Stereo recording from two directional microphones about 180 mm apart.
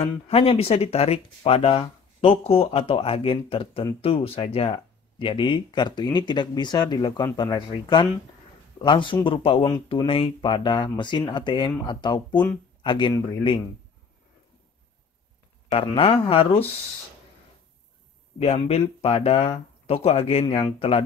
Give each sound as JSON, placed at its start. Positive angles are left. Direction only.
{"t": 0.0, "sound": "speech", "side_deg": 30}
{"t": 15.7, "sound": "speech", "side_deg": 30}
{"t": 18.4, "sound": "speech", "side_deg": 35}